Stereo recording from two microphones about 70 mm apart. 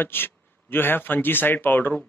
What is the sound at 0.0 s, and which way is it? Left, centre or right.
Speech, left.